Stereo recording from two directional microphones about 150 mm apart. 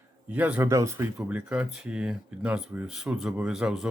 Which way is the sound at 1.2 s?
5° right (ahead or behind).